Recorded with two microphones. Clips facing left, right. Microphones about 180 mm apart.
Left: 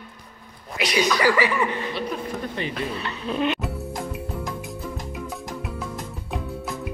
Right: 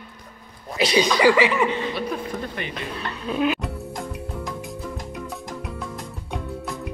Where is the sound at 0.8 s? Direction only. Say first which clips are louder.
Right 3 dB; 30° right (ahead or behind).